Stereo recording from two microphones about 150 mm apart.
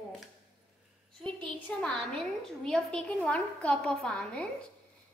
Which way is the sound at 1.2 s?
5° left (ahead or behind).